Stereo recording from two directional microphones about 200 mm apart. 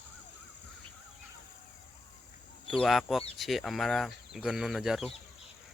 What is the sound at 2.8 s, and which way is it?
Speech, centre (ahead or behind).